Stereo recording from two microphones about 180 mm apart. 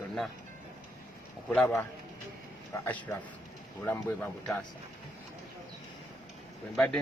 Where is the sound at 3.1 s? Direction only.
15° left (ahead or behind).